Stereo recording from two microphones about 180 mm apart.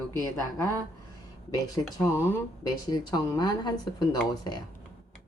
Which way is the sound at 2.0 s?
15° left (ahead or behind).